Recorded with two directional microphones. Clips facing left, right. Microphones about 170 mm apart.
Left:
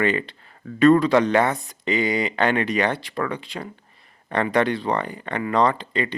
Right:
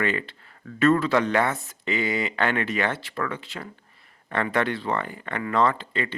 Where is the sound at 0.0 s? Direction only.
20° left (ahead or behind).